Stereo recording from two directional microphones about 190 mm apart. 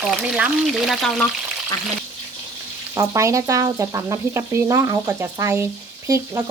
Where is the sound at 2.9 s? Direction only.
15° right (ahead or behind).